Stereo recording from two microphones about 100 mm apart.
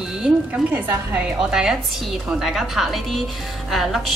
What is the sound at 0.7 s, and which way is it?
Speech, 20° right (ahead or behind).